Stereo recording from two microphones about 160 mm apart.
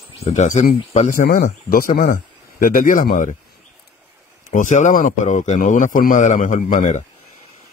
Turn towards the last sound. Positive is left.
turn(degrees=45)  # may be behind; listen again after turning